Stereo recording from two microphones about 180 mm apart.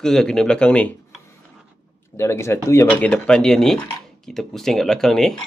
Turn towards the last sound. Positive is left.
turn(degrees=0)  # may be behind; listen again after turning